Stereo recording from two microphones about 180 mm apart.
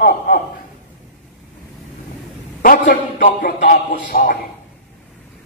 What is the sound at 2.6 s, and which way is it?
A man's voice, 50° left (ahead or behind).